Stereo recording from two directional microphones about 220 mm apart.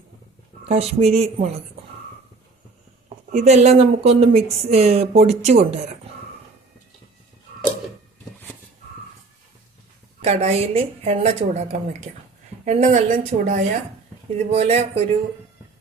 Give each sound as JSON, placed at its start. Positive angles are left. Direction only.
{"t": 0.6, "sound": "speech", "side_deg": -30}
{"t": 3.3, "sound": "speech", "side_deg": -30}
{"t": 10.2, "sound": "a woman's voice", "side_deg": -30}